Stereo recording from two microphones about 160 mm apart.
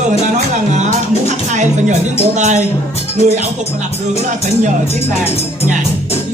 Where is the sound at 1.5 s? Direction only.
45° right (ahead or behind).